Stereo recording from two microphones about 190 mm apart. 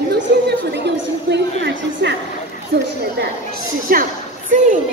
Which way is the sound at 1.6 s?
65° right (ahead or behind).